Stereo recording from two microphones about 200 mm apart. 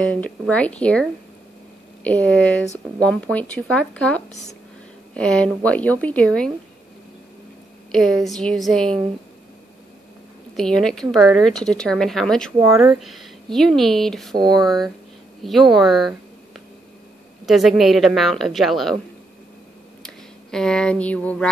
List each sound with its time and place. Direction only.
0.0 s a woman's voice: 5° left (ahead or behind)
2.0 s a woman's voice: 5° left (ahead or behind)
7.9 s a woman's voice: centre (ahead or behind)
10.5 s a woman's voice: centre (ahead or behind)
12.6 s speech: 15° right (ahead or behind)
13.0 s a woman's voice: centre (ahead or behind)
14.3 s speech: 20° right (ahead or behind)
15.4 s a woman's voice: centre (ahead or behind)
17.5 s a woman's voice: centre (ahead or behind)
20.5 s a woman's voice: 5° left (ahead or behind)